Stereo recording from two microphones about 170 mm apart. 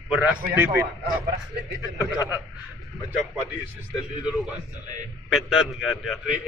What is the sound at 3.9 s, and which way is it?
A man's voice, 5° right (ahead or behind).